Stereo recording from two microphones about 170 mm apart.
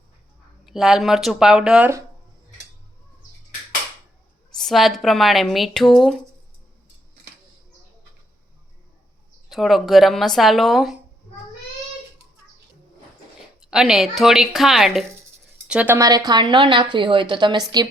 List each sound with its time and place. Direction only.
0.6 s a woman's voice: centre (ahead or behind)
4.5 s a woman's voice: centre (ahead or behind)
9.5 s a woman's voice: centre (ahead or behind)
13.6 s a woman's voice: 5° right (ahead or behind)
16.0 s a woman's voice: 20° right (ahead or behind)